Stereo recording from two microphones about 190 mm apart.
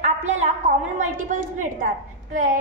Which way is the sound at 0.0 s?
40° right (ahead or behind).